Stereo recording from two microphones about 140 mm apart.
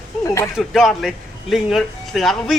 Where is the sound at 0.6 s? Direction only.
Centre (ahead or behind).